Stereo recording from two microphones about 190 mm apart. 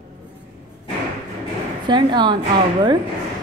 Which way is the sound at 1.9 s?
25° right (ahead or behind).